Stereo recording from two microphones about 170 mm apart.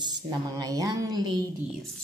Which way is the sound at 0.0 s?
25° right (ahead or behind).